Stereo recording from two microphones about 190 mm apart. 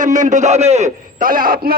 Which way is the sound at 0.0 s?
40° right (ahead or behind).